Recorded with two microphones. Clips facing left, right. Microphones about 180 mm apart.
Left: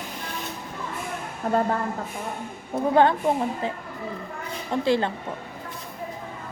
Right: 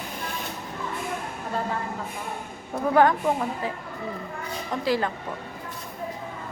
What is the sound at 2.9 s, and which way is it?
Speech, 25° left (ahead or behind).